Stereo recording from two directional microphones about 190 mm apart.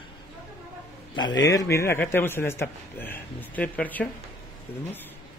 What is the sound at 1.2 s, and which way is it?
A man's voice, 20° left (ahead or behind).